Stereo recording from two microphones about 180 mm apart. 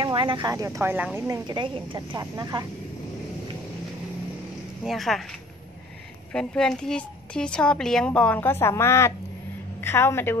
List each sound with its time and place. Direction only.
0.0 s a woman's voice: 25° right (ahead or behind)
4.8 s speech: centre (ahead or behind)
6.3 s a woman's voice: 5° left (ahead or behind)